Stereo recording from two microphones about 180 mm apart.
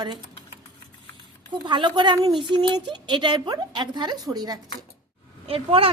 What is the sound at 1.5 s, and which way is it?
Speech, 25° right (ahead or behind).